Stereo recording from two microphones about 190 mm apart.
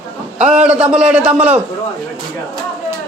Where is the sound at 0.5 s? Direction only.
5° right (ahead or behind).